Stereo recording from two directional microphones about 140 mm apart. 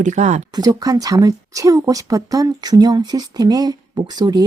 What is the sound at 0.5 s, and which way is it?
Speech, 25° right (ahead or behind).